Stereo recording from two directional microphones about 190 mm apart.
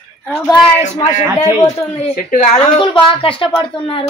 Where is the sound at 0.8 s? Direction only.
40° left (ahead or behind).